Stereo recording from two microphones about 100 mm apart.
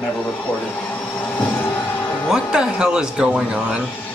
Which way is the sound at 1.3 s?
15° left (ahead or behind).